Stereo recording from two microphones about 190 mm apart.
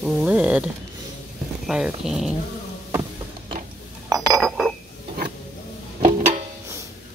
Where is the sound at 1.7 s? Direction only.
Centre (ahead or behind).